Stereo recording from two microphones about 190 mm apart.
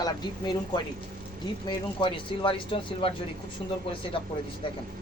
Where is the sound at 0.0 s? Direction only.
20° left (ahead or behind).